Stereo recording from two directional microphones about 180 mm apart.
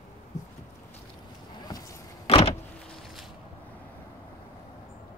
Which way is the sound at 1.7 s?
20° left (ahead or behind).